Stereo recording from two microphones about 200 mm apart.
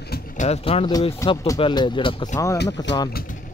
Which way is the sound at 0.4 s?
30° left (ahead or behind).